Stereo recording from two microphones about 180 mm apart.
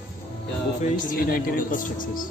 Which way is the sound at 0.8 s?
50° left (ahead or behind).